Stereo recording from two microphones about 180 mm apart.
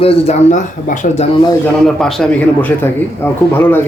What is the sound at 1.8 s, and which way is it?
A man's voice, centre (ahead or behind).